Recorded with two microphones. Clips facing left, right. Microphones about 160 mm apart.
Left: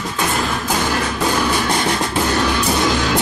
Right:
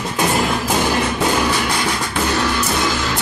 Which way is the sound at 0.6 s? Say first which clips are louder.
Right 2 dB; 5° right (ahead or behind).